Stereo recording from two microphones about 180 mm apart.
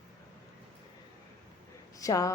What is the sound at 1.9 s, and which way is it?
Speech, 20° left (ahead or behind).